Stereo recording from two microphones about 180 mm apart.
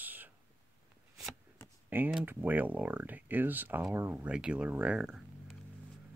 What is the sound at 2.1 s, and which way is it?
Speech, 5° right (ahead or behind).